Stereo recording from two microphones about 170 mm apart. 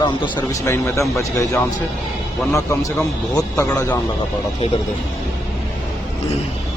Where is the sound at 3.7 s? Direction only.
15° left (ahead or behind).